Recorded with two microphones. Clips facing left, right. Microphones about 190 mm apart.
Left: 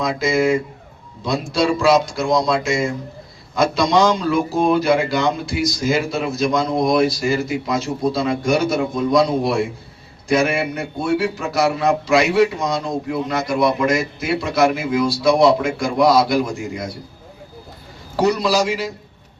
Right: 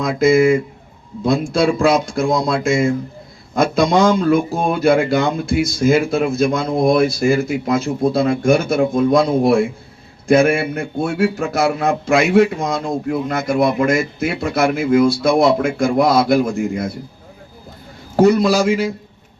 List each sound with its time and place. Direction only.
0.0 s speech: 50° right (ahead or behind)
1.5 s speech: 50° right (ahead or behind)
18.2 s speech: 50° right (ahead or behind)